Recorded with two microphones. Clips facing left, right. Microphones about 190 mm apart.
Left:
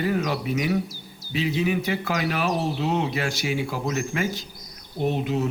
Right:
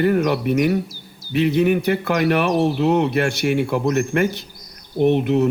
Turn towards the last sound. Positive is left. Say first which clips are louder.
# right 8 dB
turn(degrees=-60)  # may be behind; listen again after turning